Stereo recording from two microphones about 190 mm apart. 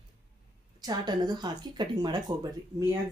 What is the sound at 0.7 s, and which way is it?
Speech, 20° right (ahead or behind).